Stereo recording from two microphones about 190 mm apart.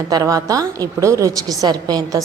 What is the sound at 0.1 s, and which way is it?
A woman's voice, 20° right (ahead or behind).